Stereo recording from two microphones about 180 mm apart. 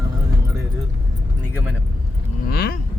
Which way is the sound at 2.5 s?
60° left (ahead or behind).